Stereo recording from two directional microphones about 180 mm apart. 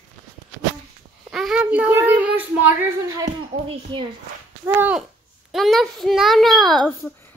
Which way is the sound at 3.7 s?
30° right (ahead or behind).